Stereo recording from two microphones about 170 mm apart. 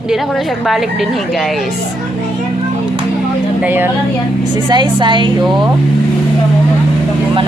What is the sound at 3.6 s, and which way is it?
Speech, 10° right (ahead or behind).